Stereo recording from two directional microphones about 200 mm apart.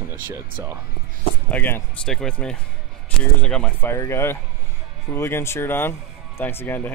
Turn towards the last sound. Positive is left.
turn(degrees=10)  # may be behind; listen again after turning